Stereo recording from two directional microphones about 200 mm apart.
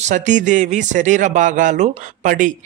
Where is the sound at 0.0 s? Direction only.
35° right (ahead or behind).